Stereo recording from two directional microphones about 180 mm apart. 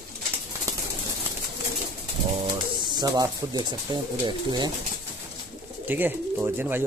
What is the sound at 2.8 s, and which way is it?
Speech, 25° right (ahead or behind).